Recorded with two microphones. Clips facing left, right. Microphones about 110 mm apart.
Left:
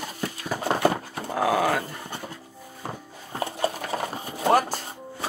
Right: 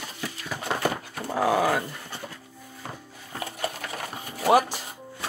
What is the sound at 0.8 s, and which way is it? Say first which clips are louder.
Dog: left 4 dB; 30° left (ahead or behind).